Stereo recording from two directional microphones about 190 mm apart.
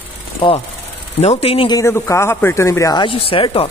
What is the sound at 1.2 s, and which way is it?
Speech, 30° left (ahead or behind).